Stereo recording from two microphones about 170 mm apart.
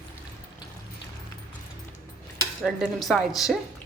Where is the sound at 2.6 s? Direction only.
Centre (ahead or behind).